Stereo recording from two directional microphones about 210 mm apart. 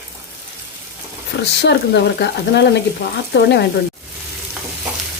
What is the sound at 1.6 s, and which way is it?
Speech, 55° left (ahead or behind).